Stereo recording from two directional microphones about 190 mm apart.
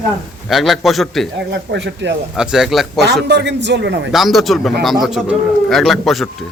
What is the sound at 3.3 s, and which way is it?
Speech, 65° right (ahead or behind).